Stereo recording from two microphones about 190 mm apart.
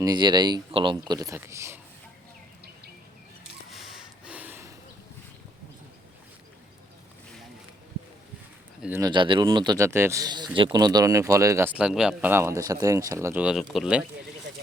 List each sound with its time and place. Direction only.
0.0 s speech: 20° right (ahead or behind)
3.7 s gasp: centre (ahead or behind)
8.8 s speech: 15° right (ahead or behind)
11.8 s speech: 5° right (ahead or behind)